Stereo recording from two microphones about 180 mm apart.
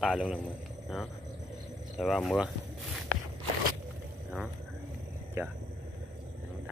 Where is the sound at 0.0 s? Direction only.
Centre (ahead or behind).